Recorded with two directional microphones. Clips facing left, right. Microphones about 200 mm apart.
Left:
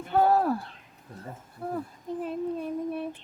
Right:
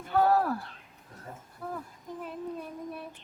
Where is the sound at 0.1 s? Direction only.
25° left (ahead or behind).